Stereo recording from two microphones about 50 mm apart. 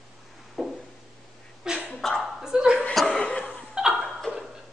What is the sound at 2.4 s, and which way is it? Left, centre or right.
Chuckle, centre.